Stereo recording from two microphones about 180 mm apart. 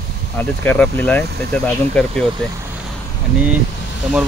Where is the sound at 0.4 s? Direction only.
10° left (ahead or behind).